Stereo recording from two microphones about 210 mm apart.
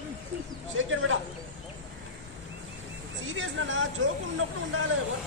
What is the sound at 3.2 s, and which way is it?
Speech, 70° right (ahead or behind).